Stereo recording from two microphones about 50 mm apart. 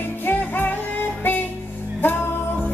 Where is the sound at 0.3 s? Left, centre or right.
Left.